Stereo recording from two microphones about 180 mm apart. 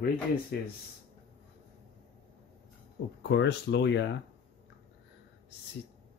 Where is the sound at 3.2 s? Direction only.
75° left (ahead or behind).